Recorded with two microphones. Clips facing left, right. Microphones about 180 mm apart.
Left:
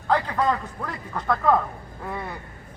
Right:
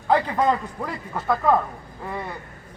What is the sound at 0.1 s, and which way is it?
A man's voice, 20° right (ahead or behind).